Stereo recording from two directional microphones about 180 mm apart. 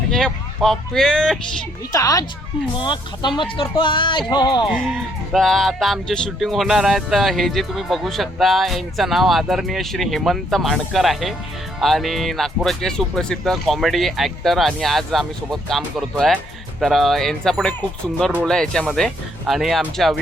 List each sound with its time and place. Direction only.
0.1 s speech: 5° left (ahead or behind)
1.9 s speech: 20° left (ahead or behind)
4.7 s speech: centre (ahead or behind)